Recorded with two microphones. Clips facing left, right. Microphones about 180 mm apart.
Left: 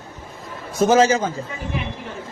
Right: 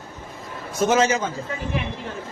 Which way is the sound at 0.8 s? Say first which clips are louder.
Left 4 dB; 35° left (ahead or behind).